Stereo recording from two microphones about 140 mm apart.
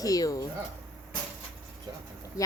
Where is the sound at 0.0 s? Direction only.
25° left (ahead or behind).